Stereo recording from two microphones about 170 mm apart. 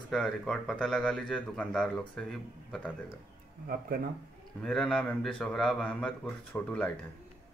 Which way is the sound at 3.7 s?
60° right (ahead or behind).